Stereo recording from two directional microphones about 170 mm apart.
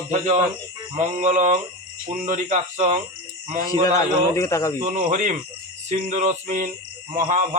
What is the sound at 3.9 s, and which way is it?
Speech, 20° left (ahead or behind).